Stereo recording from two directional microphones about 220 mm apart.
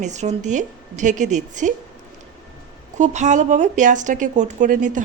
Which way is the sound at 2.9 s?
35° right (ahead or behind).